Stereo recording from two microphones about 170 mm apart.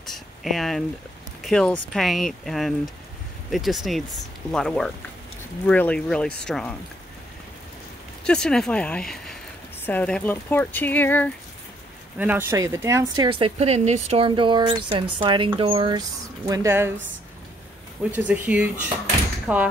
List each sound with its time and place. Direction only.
0.0 s a sound: centre (ahead or behind)
1.4 s speech: 5° left (ahead or behind)
8.2 s speech: 5° left (ahead or behind)
12.2 s speech: 10° right (ahead or behind); by 16.0 s 30° right (ahead or behind)
16.4 s speech: 20° right (ahead or behind)
18.1 s speech: 10° right (ahead or behind)